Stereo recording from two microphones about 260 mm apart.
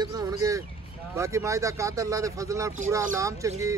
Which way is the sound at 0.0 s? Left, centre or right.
Centre.